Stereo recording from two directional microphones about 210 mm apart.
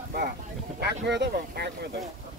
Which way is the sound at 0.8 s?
55° right (ahead or behind).